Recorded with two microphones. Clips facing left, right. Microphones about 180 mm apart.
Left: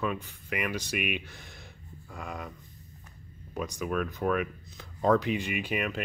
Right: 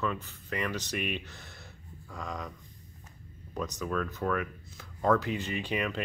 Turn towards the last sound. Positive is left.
turn(degrees=5)  # may be behind; listen again after turning